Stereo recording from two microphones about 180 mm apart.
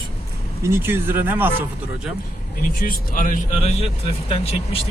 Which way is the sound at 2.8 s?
50° left (ahead or behind).